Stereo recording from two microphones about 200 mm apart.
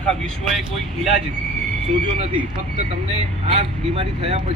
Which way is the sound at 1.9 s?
35° right (ahead or behind).